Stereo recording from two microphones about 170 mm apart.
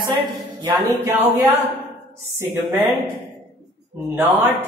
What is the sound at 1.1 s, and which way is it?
Speech, 10° right (ahead or behind).